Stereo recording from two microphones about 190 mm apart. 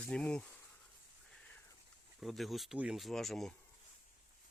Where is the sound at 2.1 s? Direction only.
Centre (ahead or behind).